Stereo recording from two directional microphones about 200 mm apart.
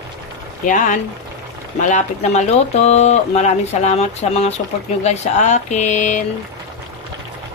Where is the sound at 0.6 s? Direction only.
40° left (ahead or behind).